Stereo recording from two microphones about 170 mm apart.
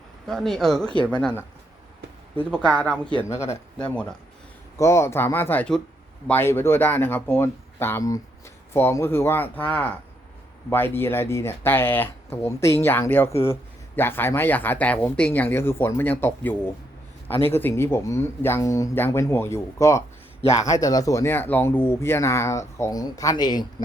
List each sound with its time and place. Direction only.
0.3 s speech: centre (ahead or behind)
2.3 s speech: 10° left (ahead or behind)
4.8 s speech: 15° left (ahead or behind)